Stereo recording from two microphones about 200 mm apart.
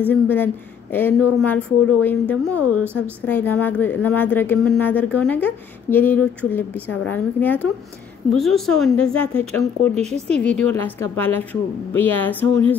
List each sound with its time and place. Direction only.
0.1 s a woman's voice: 10° left (ahead or behind)
9.9 s speech: 30° right (ahead or behind)
10.3 s speech: 5° left (ahead or behind)